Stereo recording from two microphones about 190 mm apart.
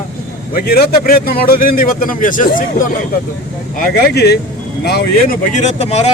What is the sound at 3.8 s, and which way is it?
Speech, 50° left (ahead or behind).